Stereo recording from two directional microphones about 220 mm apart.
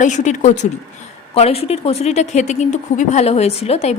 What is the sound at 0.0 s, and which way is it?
A woman's voice, 35° left (ahead or behind).